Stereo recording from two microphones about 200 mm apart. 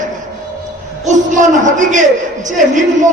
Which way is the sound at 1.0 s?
40° right (ahead or behind).